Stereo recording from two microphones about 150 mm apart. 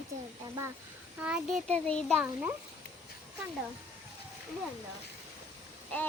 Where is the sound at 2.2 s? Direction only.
10° right (ahead or behind).